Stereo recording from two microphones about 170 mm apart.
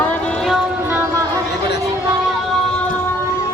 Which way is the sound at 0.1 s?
Centre (ahead or behind).